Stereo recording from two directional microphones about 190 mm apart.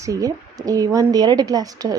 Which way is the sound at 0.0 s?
15° right (ahead or behind).